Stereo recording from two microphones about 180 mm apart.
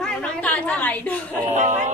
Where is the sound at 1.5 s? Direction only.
40° right (ahead or behind).